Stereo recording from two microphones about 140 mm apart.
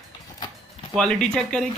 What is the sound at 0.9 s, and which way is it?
Speech, 5° left (ahead or behind).